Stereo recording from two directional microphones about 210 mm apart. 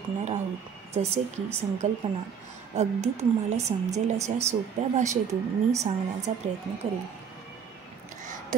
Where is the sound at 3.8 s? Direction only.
35° right (ahead or behind).